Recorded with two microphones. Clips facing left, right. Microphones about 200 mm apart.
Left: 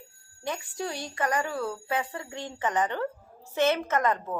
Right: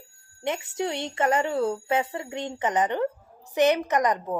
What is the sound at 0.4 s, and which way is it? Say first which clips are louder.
A woman's voice: right 5 dB; 25° right (ahead or behind).